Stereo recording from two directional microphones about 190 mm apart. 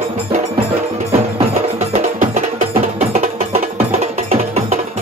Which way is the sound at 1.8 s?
40° right (ahead or behind).